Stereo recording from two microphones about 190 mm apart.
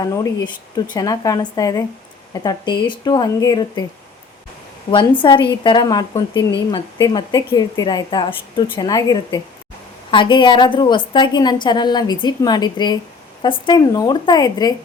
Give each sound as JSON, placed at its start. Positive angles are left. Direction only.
{"t": 0.0, "sound": "a woman's voice", "side_deg": 20}
{"t": 4.9, "sound": "a woman's voice", "side_deg": 25}